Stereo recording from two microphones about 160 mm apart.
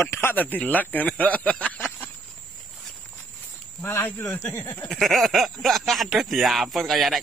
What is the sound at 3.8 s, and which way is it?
Speech, 15° left (ahead or behind).